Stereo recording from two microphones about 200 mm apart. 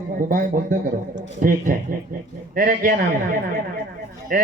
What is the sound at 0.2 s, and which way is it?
A man's voice, 45° right (ahead or behind).